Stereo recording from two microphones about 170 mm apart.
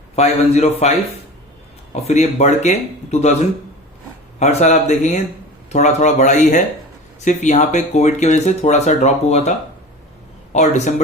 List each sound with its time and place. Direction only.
0.2 s speech: 40° left (ahead or behind)
4.4 s speech: 40° left (ahead or behind)